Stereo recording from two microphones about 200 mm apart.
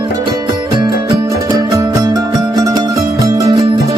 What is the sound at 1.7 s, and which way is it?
Music, 15° right (ahead or behind).